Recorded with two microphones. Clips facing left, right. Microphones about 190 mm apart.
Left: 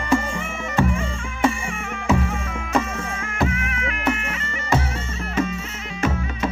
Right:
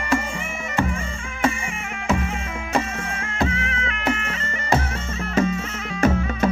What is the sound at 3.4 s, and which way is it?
Music, 30° right (ahead or behind).